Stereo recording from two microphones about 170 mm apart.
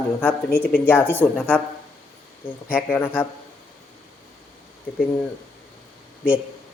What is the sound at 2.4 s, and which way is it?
Speech, 10° left (ahead or behind).